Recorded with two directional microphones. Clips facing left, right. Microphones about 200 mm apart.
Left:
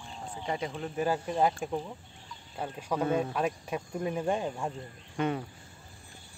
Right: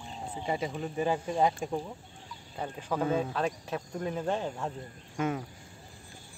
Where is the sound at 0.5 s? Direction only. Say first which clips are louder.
Right 1 dB; 5° right (ahead or behind).